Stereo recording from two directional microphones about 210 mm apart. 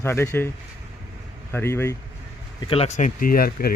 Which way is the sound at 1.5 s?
10° left (ahead or behind).